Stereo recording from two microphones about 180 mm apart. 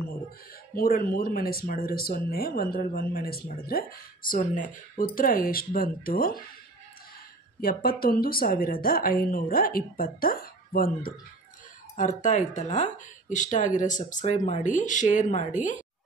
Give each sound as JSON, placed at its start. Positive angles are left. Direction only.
{"t": 0.7, "sound": "speech", "side_deg": 55}
{"t": 8.0, "sound": "speech", "side_deg": 55}